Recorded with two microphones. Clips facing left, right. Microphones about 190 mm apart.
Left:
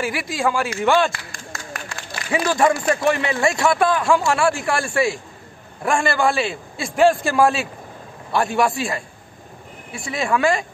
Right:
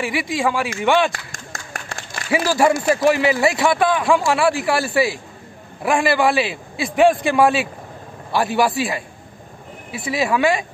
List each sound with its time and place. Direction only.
0.0 s speech: centre (ahead or behind)
1.1 s a sound: 45° right (ahead or behind)
2.3 s speech: 5° right (ahead or behind)
10.0 s speech: 5° right (ahead or behind)